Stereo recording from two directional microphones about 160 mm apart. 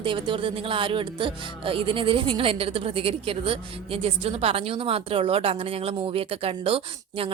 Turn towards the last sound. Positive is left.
turn(degrees=-35)  # may be behind; listen again after turning